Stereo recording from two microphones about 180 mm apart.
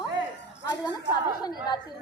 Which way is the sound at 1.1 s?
20° left (ahead or behind).